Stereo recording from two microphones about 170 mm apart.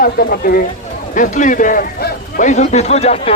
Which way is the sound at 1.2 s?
50° left (ahead or behind).